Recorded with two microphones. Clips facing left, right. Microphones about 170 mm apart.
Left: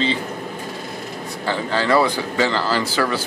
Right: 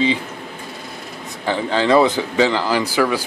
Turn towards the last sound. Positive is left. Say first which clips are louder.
# right 3 dB
turn(degrees=-15)  # may be behind; listen again after turning